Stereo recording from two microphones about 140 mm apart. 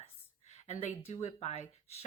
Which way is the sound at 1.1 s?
50° left (ahead or behind).